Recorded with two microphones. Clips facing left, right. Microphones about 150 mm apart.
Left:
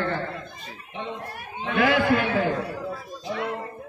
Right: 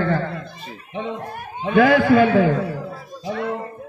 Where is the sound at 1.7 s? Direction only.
55° right (ahead or behind).